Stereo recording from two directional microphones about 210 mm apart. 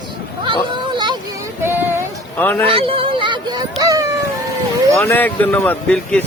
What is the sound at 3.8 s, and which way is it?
Dog, 15° right (ahead or behind).